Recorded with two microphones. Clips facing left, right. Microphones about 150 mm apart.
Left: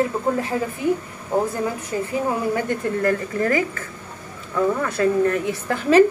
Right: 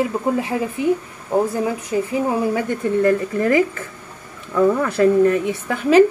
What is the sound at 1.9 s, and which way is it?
A woman's voice, 15° right (ahead or behind).